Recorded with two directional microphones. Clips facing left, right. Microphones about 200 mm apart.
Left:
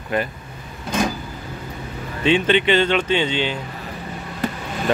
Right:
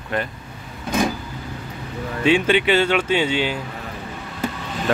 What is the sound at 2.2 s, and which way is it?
Speech, 10° right (ahead or behind).